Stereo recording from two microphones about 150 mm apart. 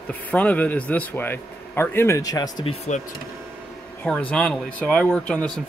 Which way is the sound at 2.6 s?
45° left (ahead or behind).